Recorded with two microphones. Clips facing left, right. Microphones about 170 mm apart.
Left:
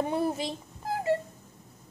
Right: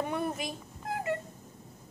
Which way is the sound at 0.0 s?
30° left (ahead or behind).